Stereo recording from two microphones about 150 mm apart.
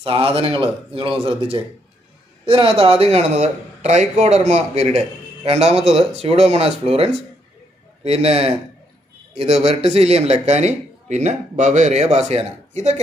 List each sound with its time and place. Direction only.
0.0 s a man's voice: 40° right (ahead or behind)
2.4 s a man's voice: 35° right (ahead or behind)